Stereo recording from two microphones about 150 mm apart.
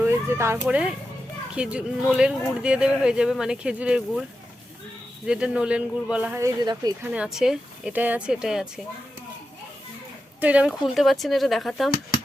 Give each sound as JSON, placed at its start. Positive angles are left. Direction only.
{"t": 0.0, "sound": "a sound", "side_deg": -15}
{"t": 0.6, "sound": "speech", "side_deg": -5}
{"t": 6.4, "sound": "speech", "side_deg": -25}
{"t": 7.0, "sound": "speech", "side_deg": -10}
{"t": 10.4, "sound": "speech", "side_deg": -10}